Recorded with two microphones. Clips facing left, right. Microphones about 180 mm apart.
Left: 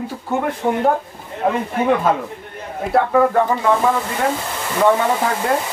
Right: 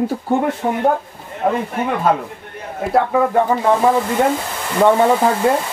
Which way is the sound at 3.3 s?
15° right (ahead or behind).